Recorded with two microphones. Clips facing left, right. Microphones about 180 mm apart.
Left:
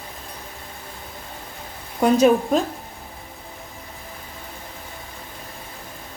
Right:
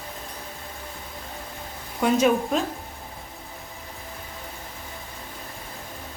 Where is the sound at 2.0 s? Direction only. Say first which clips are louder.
Left 4 dB; 35° left (ahead or behind).